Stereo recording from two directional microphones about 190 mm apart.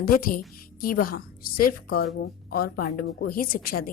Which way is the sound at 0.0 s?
50° left (ahead or behind).